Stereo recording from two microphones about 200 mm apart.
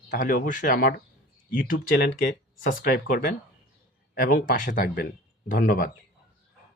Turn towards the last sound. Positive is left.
turn(degrees=45)  # may be behind; listen again after turning